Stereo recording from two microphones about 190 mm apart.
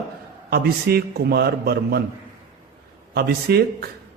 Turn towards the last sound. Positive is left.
turn(degrees=-55)  # may be behind; listen again after turning